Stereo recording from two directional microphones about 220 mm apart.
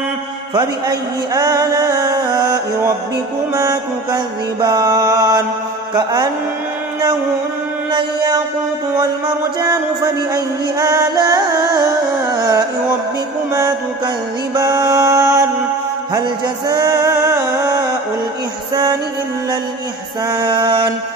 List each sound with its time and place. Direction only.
0.6 s speech: 15° right (ahead or behind)
5.9 s a sound: 20° right (ahead or behind)
10.3 s speech: 15° right (ahead or behind)
12.4 s carnatic music: 15° right (ahead or behind)
13.5 s speech: 15° right (ahead or behind)
16.1 s music: 20° right (ahead or behind)
20.2 s a sound: 20° right (ahead or behind)